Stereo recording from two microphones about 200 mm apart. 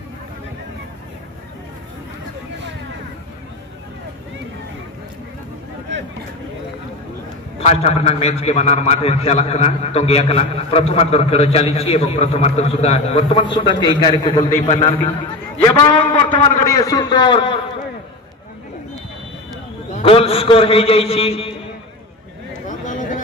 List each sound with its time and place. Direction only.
7.5 s a man's voice: 30° left (ahead or behind)
15.6 s a man's voice: 15° left (ahead or behind)
19.9 s a man's voice: 30° left (ahead or behind)
22.7 s a sound: 40° left (ahead or behind)